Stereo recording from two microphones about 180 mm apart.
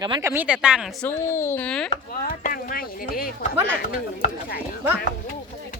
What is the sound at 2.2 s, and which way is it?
Speech, 50° left (ahead or behind).